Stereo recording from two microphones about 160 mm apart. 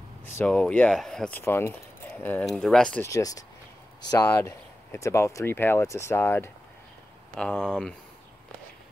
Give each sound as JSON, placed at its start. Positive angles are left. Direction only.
{"t": 0.5, "sound": "speech", "side_deg": 10}
{"t": 3.1, "sound": "speech", "side_deg": 20}